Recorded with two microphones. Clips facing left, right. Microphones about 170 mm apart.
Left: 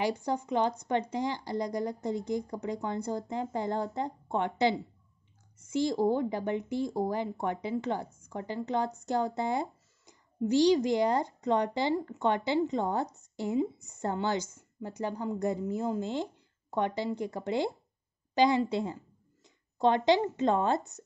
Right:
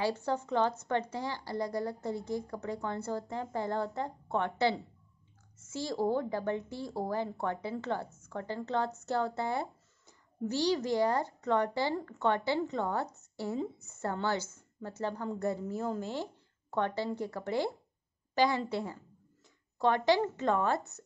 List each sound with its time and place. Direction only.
0.0 s speech: 15° left (ahead or behind)